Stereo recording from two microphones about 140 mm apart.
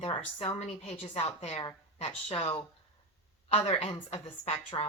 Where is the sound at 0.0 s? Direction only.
40° left (ahead or behind).